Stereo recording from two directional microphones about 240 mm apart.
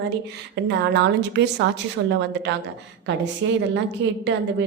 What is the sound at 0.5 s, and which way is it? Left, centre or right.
A woman's voice, right.